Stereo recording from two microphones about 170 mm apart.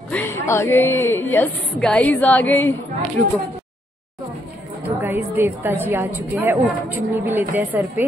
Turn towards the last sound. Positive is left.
turn(degrees=-10)  # may be behind; listen again after turning